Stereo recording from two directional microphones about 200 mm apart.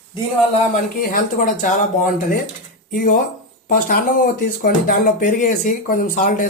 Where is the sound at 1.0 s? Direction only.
45° left (ahead or behind).